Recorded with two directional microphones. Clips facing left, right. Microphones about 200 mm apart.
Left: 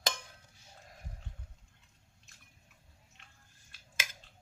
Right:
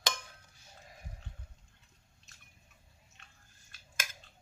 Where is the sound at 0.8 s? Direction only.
Centre (ahead or behind).